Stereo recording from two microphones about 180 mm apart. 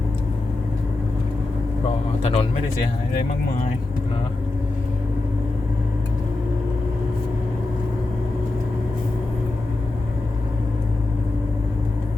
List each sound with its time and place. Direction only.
2.2 s speech: 30° left (ahead or behind)